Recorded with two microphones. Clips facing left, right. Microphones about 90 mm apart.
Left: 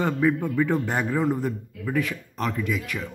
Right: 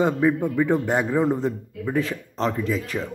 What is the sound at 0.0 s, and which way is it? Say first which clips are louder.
A man's voice: right 3 dB; 20° right (ahead or behind).